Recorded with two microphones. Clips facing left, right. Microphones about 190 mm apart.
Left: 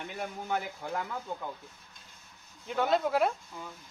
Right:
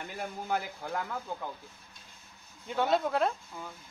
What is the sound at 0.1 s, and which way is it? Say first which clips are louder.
Speech: right 1 dB; centre (ahead or behind).